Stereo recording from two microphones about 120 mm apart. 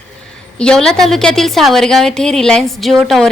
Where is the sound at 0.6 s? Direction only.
5° left (ahead or behind).